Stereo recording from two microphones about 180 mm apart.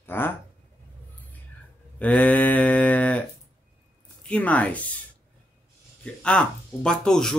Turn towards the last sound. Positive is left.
turn(degrees=5)  # may be behind; listen again after turning